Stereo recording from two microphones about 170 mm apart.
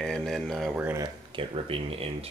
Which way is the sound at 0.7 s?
10° right (ahead or behind).